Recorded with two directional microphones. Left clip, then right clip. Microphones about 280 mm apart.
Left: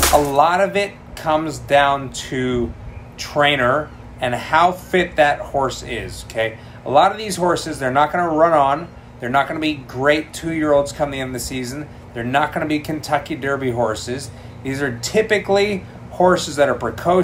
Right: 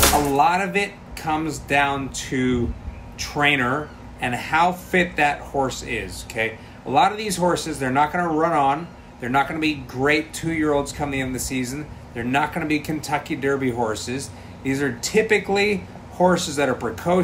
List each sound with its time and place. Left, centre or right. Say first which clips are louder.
0.4 s speech: left 4 dB; centre